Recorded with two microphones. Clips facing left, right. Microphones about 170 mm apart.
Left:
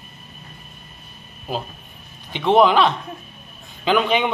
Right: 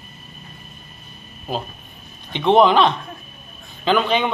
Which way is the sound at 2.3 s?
5° left (ahead or behind).